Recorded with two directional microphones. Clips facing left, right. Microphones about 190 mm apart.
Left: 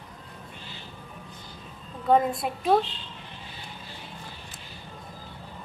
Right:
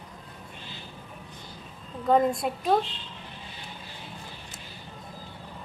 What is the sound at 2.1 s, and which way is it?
Speech, centre (ahead or behind).